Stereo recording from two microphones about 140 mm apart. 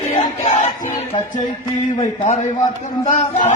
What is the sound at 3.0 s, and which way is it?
Speech, 60° left (ahead or behind).